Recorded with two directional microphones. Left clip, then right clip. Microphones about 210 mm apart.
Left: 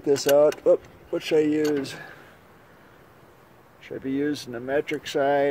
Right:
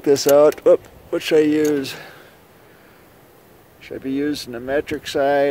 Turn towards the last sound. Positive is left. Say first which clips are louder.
# right 5 dB
turn(degrees=0)  # may be behind; listen again after turning